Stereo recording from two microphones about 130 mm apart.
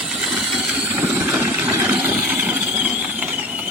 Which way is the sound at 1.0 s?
15° right (ahead or behind).